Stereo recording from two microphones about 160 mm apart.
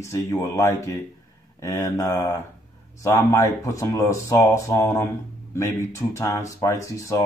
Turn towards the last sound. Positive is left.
turn(degrees=20)  # may be behind; listen again after turning